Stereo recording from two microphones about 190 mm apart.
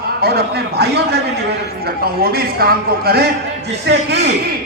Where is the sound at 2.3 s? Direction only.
55° right (ahead or behind).